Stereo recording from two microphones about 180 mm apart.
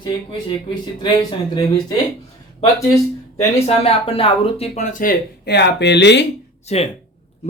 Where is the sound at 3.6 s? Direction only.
35° left (ahead or behind); by 6.3 s 75° left (ahead or behind).